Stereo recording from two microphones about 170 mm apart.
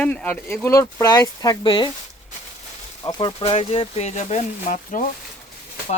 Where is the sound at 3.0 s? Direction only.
25° left (ahead or behind); by 5.0 s 50° left (ahead or behind).